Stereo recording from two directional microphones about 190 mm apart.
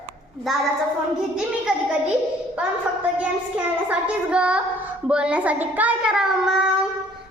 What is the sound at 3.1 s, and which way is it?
A child's voice, 10° right (ahead or behind).